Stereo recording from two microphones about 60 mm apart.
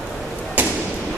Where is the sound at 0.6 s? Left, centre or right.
Right.